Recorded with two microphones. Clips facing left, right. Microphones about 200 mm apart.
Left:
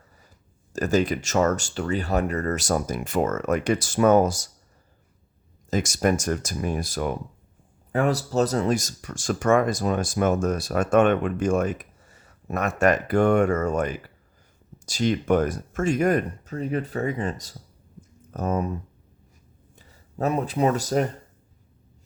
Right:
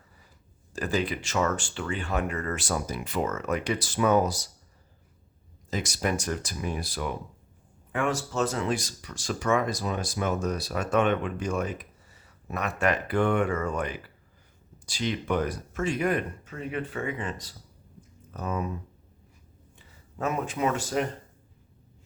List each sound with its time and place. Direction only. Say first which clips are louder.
0.7 s speech: left 6 dB; 45° left (ahead or behind)
5.7 s speech: left 6 dB; 45° left (ahead or behind)
19.7 s speech: left 6 dB; 35° left (ahead or behind)